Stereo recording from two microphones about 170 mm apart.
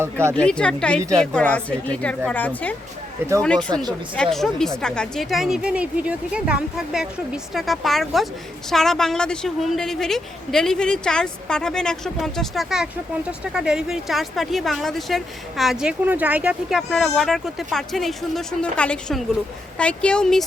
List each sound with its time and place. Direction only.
0.0 s speech: 15° right (ahead or behind)
0.3 s a woman's voice: 5° left (ahead or behind)